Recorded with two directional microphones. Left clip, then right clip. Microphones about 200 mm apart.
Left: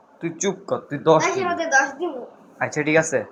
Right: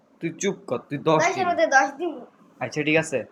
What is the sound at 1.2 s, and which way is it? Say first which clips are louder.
Speech: right 1 dB; 40° right (ahead or behind).